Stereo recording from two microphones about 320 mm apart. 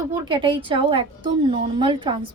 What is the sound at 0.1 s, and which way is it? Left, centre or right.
A woman's voice, centre.